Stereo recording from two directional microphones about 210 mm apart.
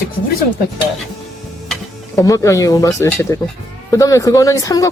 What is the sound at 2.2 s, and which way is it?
Speech, 15° left (ahead or behind).